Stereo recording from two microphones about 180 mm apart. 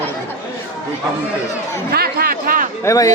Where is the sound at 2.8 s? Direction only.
20° left (ahead or behind).